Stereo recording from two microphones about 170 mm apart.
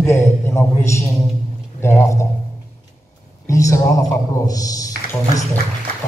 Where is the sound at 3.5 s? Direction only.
20° left (ahead or behind).